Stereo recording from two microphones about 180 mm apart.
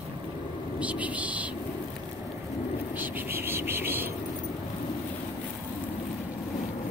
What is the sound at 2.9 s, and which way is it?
Speech, 10° right (ahead or behind).